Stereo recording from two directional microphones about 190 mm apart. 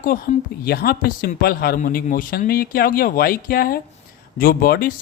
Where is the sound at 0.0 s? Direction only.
45° left (ahead or behind).